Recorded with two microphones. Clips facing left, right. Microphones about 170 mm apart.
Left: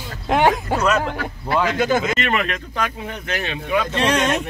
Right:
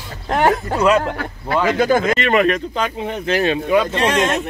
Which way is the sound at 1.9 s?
35° right (ahead or behind).